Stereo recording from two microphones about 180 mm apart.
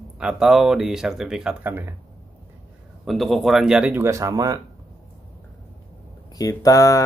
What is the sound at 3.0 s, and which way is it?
Speech, centre (ahead or behind).